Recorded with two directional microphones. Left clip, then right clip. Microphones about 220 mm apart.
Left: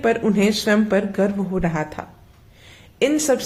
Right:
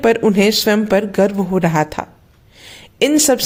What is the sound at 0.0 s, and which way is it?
A man's voice, 40° right (ahead or behind).